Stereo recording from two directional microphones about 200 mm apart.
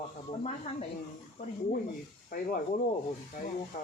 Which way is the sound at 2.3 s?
50° left (ahead or behind).